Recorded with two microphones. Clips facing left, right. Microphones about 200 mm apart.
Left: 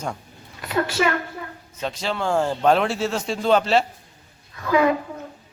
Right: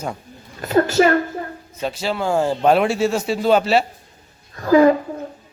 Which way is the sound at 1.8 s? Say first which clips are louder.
Right 3 dB; 5° right (ahead or behind).